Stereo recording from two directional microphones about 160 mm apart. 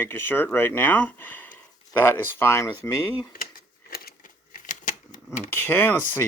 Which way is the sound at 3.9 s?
65° left (ahead or behind).